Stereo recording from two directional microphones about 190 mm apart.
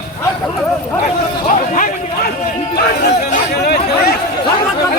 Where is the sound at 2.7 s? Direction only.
60° left (ahead or behind).